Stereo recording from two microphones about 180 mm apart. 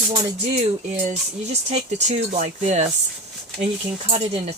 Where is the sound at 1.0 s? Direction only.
35° right (ahead or behind).